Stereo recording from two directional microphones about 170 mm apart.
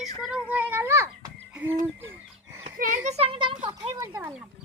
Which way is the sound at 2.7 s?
50° right (ahead or behind).